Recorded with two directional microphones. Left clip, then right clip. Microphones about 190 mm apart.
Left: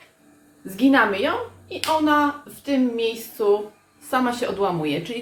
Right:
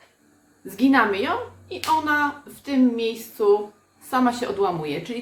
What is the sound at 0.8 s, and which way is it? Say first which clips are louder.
Speech: left 1 dB; 20° right (ahead or behind).